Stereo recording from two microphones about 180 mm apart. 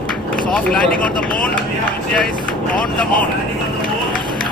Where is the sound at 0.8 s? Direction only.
50° left (ahead or behind).